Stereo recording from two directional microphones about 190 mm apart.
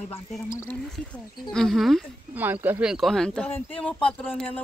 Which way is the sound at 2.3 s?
10° right (ahead or behind).